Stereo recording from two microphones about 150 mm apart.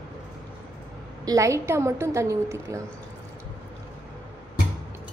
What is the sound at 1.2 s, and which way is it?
A woman's voice, 20° right (ahead or behind).